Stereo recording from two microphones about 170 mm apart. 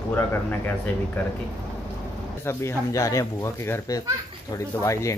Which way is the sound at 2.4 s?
15° left (ahead or behind).